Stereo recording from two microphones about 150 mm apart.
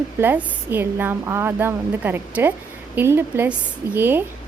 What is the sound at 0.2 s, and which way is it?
A woman's voice, 15° right (ahead or behind).